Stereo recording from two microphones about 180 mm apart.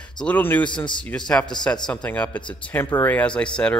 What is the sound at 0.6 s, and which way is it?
Speech, 25° left (ahead or behind).